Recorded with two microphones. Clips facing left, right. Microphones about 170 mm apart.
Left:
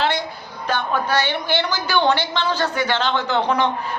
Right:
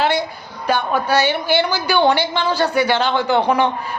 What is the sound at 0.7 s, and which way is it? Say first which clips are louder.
A woman's voice: right 4 dB; 10° right (ahead or behind).